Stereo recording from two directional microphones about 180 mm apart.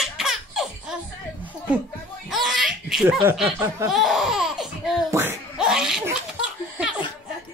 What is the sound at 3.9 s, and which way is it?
Laughter, centre (ahead or behind).